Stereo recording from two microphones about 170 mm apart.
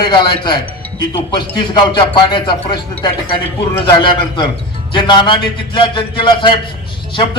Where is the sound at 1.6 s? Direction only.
25° left (ahead or behind).